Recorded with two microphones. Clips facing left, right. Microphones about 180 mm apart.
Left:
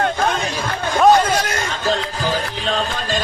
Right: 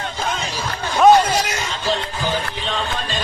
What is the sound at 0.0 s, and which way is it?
Music, 60° left (ahead or behind).